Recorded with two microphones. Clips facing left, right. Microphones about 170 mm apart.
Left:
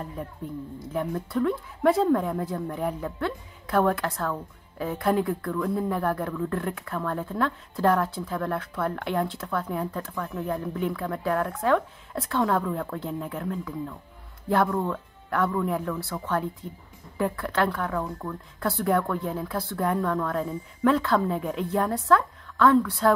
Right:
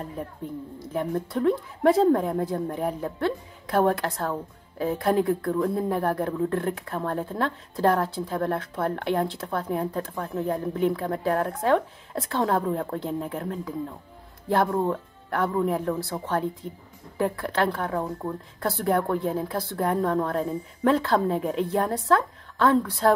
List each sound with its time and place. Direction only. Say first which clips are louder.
0.9 s a woman's voice: right 1 dB; 35° right (ahead or behind)